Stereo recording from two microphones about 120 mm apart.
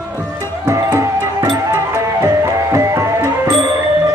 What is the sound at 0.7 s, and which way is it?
Music, 25° right (ahead or behind).